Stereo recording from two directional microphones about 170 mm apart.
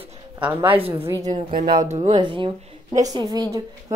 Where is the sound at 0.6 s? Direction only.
35° right (ahead or behind).